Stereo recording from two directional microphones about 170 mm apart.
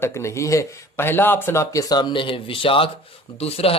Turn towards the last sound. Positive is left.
turn(degrees=35)  # may be behind; listen again after turning